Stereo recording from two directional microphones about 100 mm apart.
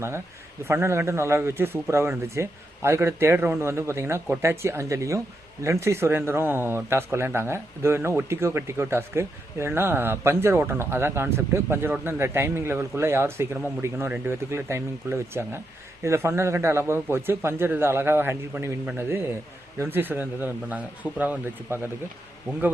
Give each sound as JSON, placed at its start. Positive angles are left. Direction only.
{"t": 0.7, "sound": "speech", "side_deg": -25}